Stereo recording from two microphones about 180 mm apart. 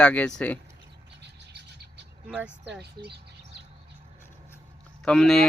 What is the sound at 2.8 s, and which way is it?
Speech, 65° right (ahead or behind).